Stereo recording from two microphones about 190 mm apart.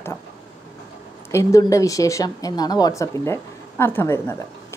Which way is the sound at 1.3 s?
15° left (ahead or behind).